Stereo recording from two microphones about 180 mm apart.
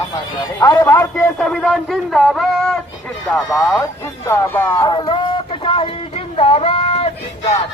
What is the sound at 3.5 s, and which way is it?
Speech, 20° left (ahead or behind).